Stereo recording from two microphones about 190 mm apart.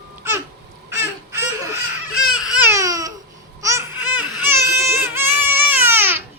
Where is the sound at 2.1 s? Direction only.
5° right (ahead or behind).